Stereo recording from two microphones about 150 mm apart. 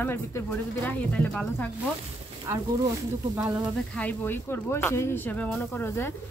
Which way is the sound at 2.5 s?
15° right (ahead or behind).